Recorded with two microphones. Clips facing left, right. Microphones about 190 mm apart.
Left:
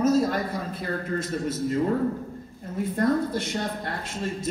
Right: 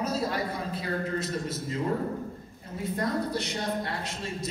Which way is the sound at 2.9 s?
50° left (ahead or behind).